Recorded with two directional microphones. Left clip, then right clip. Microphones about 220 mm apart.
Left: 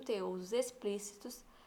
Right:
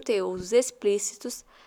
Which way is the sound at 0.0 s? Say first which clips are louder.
Right 12 dB; 45° right (ahead or behind).